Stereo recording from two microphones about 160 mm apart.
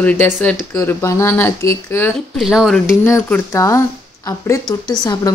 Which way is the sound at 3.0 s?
15° left (ahead or behind).